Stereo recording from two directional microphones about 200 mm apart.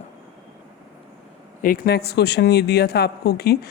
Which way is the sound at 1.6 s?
50° left (ahead or behind).